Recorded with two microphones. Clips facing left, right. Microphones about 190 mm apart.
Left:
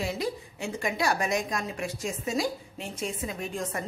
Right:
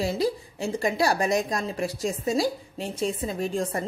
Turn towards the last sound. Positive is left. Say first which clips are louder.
# right 6 dB
turn(degrees=-35)  # may be behind; listen again after turning